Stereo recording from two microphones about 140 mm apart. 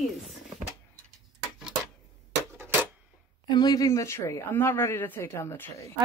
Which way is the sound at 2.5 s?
20° right (ahead or behind).